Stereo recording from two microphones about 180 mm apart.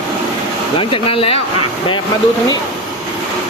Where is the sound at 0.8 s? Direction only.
30° left (ahead or behind).